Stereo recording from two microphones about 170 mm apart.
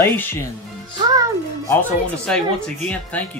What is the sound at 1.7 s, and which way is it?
Speech, 10° left (ahead or behind).